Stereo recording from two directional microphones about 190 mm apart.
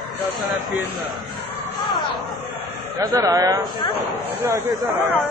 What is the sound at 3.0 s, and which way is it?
A man's voice, 20° right (ahead or behind).